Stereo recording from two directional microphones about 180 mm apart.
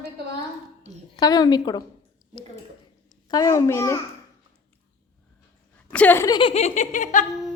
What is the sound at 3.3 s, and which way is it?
Speech, 20° left (ahead or behind).